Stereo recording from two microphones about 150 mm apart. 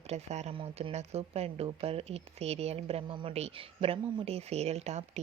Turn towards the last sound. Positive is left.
turn(degrees=-50)  # may be behind; listen again after turning